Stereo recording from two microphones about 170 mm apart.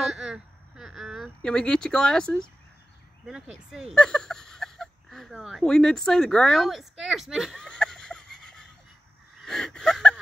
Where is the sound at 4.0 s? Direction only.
5° left (ahead or behind).